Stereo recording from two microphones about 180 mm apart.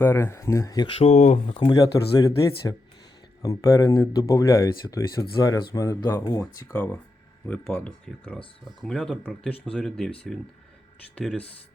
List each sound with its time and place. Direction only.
0.0 s speech: 15° left (ahead or behind); by 1.5 s 40° left (ahead or behind)
1.5 s speech: 25° left (ahead or behind); by 10.1 s 5° left (ahead or behind)
11.1 s speech: 5° left (ahead or behind)